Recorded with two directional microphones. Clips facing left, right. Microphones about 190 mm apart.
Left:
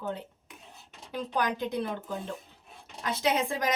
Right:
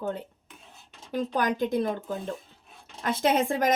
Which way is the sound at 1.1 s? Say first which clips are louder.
Right 4 dB; 45° right (ahead or behind).